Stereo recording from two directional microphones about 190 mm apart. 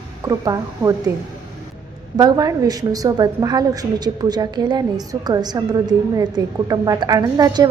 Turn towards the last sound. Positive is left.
turn(degrees=-20)  # may be behind; listen again after turning